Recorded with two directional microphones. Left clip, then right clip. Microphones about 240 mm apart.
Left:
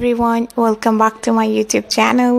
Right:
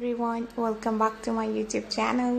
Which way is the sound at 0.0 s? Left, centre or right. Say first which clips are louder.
Left 13 dB; left.